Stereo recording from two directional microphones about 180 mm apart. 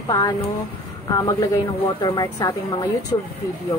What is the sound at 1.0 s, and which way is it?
A woman's voice, 20° left (ahead or behind).